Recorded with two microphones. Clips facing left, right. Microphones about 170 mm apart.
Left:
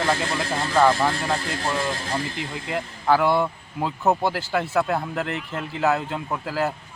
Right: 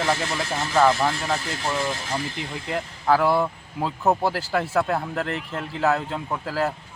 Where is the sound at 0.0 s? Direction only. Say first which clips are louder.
Left 1 dB; 20° right (ahead or behind).